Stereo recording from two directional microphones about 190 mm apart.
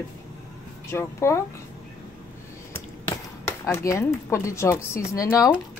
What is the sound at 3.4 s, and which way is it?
Speech, 15° left (ahead or behind).